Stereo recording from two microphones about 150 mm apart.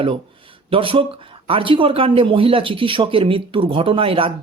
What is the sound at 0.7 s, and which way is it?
Speech, 35° right (ahead or behind).